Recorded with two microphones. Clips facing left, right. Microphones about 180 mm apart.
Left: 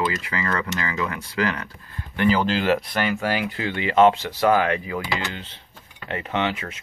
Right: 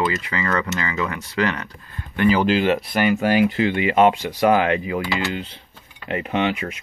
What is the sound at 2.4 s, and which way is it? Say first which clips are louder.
Speech: right 3 dB; 5° right (ahead or behind).